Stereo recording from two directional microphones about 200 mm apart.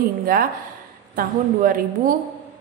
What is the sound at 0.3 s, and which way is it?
A woman's voice, 45° right (ahead or behind).